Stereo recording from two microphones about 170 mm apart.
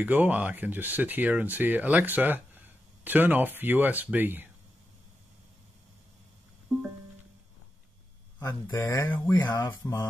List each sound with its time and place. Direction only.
0.0 s speech: 10° right (ahead or behind)
8.4 s speech: 20° left (ahead or behind)